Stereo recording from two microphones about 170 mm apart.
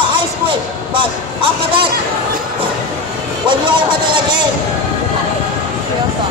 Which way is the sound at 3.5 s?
30° right (ahead or behind).